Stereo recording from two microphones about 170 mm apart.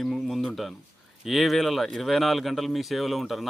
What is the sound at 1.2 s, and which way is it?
A man's voice, centre (ahead or behind).